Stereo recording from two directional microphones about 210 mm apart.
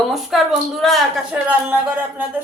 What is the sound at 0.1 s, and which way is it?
Speech, centre (ahead or behind).